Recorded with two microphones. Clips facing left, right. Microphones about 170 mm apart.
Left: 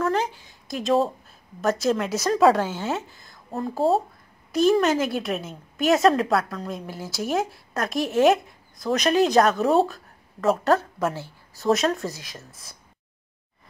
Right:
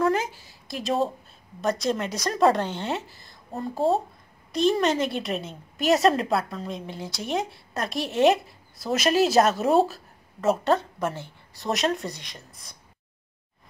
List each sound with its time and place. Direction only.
0.5 s a woman's voice: centre (ahead or behind)